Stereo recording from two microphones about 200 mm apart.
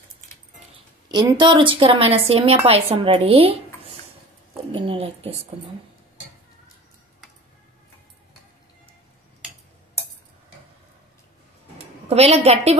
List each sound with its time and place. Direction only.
1.3 s a woman's voice: 25° right (ahead or behind)
12.1 s a woman's voice: 30° right (ahead or behind)